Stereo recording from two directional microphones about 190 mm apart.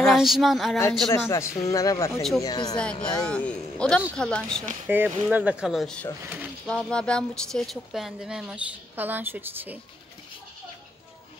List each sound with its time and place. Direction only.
0.0 s speech: centre (ahead or behind)
0.7 s a woman's voice: 10° left (ahead or behind)
2.7 s speech: 5° left (ahead or behind)
4.8 s speech: 10° right (ahead or behind)
6.2 s a sound: 10° right (ahead or behind)
6.7 s speech: 5° left (ahead or behind); by 9.8 s 10° right (ahead or behind)